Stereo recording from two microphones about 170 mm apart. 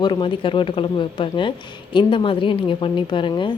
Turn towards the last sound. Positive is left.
turn(degrees=30)  # may be behind; listen again after turning